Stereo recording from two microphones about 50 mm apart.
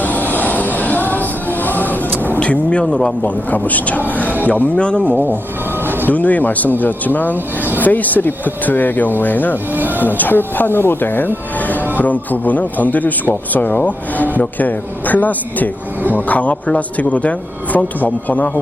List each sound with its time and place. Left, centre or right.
0.0 s music: left
2.4 s vehicle: left
2.8 s speech: centre
3.2 s speech: left
4.8 s speech: left
5.8 s music: right
6.1 s speech: left
9.7 s speech: right
10.2 s speech: left